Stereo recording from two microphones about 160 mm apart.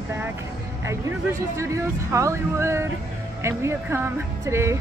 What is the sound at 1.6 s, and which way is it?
Speech, 20° right (ahead or behind).